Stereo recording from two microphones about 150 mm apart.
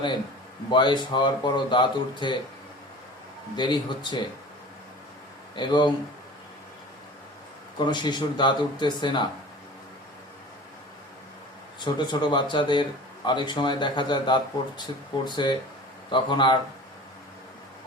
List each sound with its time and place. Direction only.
0.7 s speech: 30° left (ahead or behind)
3.5 s speech: 30° left (ahead or behind)
5.5 s speech: 30° left (ahead or behind)
7.9 s speech: 30° left (ahead or behind)
11.8 s speech: 30° left (ahead or behind)